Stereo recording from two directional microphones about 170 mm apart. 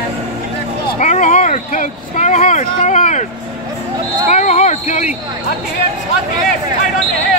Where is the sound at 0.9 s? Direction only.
45° left (ahead or behind).